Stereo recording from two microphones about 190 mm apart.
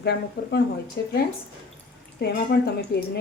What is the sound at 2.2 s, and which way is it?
Speech, 55° left (ahead or behind).